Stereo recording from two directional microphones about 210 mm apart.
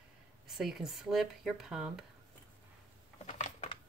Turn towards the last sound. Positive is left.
turn(degrees=35)  # may be behind; listen again after turning